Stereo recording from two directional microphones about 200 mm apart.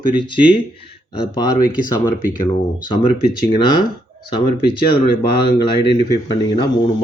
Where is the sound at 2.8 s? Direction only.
25° left (ahead or behind).